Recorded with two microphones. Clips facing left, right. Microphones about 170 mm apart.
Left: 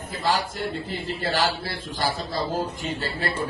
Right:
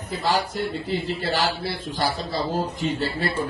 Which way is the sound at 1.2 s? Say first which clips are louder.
Even; 50° left (ahead or behind).